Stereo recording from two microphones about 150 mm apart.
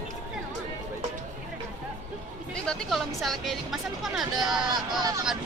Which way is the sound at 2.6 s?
Centre (ahead or behind).